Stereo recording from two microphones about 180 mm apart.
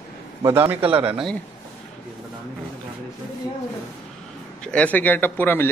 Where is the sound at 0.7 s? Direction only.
30° right (ahead or behind).